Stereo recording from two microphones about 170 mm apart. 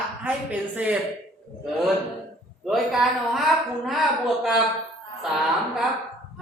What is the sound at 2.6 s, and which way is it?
Speech, centre (ahead or behind).